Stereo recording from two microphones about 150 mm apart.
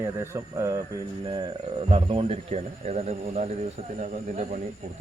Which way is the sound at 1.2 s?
35° right (ahead or behind).